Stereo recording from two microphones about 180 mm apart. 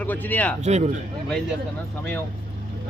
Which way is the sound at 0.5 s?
40° right (ahead or behind).